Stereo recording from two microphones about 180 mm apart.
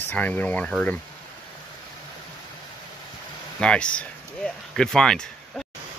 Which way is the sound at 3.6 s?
5° left (ahead or behind).